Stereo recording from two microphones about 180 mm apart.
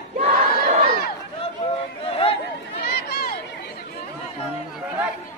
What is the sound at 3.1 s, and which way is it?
Chatter, 60° left (ahead or behind).